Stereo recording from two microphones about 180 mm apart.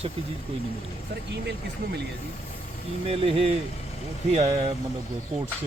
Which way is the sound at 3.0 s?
35° right (ahead or behind).